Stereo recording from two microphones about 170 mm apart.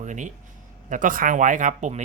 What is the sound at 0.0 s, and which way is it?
Speech, 45° right (ahead or behind).